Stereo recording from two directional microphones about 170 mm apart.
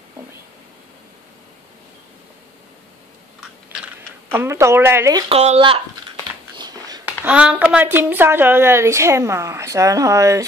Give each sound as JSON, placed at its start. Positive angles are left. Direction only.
{"t": 4.3, "sound": "a woman's voice", "side_deg": -15}
{"t": 5.3, "sound": "speech", "side_deg": -35}
{"t": 7.1, "sound": "a woman's voice", "side_deg": -5}